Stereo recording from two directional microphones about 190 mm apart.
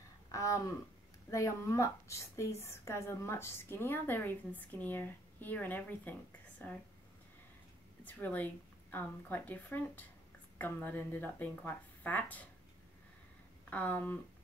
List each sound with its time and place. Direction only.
0.3 s a sound: 15° left (ahead or behind)
1.3 s a woman's voice: 15° left (ahead or behind)
8.0 s a woman's voice: 10° left (ahead or behind)
13.7 s a woman's voice: 10° left (ahead or behind)